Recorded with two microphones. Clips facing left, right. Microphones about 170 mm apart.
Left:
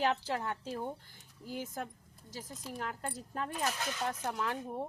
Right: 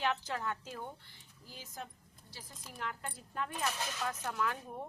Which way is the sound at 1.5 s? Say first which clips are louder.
Left 8 dB; 50° left (ahead or behind).